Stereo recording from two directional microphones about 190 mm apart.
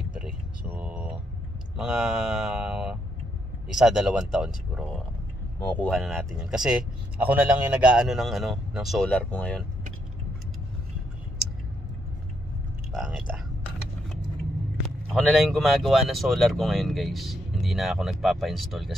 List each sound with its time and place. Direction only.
0.7 s vehicle: 5° right (ahead or behind)
1.8 s speech: 5° right (ahead or behind)
5.6 s speech: 10° left (ahead or behind)
12.9 s a sound: centre (ahead or behind)
15.1 s speech: centre (ahead or behind)